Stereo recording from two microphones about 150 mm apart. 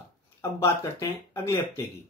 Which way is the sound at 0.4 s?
15° left (ahead or behind).